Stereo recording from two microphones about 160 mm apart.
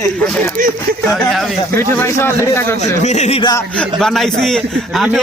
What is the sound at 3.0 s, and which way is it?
Speech, 45° left (ahead or behind).